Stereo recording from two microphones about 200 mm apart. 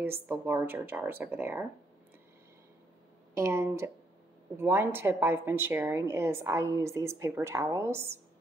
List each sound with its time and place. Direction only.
0.0 s speech: 10° right (ahead or behind)
3.3 s speech: 15° right (ahead or behind)